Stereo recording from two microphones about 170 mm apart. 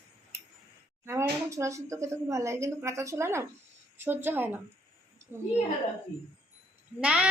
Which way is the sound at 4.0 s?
10° right (ahead or behind).